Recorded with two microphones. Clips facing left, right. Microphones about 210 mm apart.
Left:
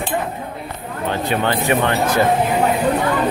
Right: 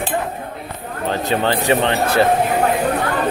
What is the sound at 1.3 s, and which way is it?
Speech, 35° right (ahead or behind).